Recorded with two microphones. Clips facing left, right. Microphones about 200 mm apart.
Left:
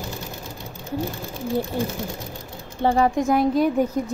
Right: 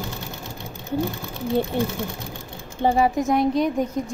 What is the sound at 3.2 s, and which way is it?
Speech, centre (ahead or behind).